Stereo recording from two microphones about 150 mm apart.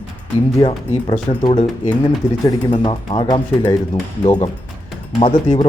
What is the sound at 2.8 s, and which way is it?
Speech, 30° left (ahead or behind).